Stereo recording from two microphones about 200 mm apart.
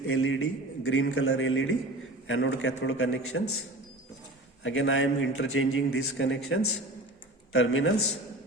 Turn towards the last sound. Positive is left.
turn(degrees=80)